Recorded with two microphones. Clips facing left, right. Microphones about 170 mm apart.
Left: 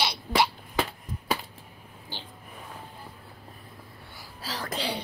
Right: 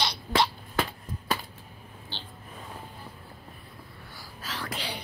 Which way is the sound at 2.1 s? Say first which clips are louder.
Left 2 dB; 10° left (ahead or behind).